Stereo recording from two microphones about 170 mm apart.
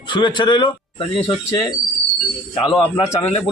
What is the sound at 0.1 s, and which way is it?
Speech, 25° left (ahead or behind).